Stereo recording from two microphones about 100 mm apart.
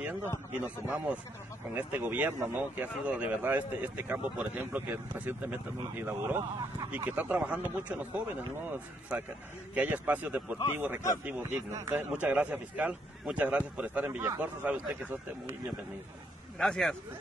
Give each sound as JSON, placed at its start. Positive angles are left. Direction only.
{"t": 0.0, "sound": "a man's voice", "side_deg": -20}
{"t": 9.8, "sound": "speech", "side_deg": -15}
{"t": 16.5, "sound": "speech", "side_deg": 5}